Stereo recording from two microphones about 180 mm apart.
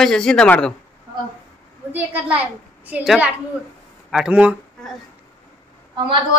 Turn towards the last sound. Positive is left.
turn(degrees=-25)  # may be behind; listen again after turning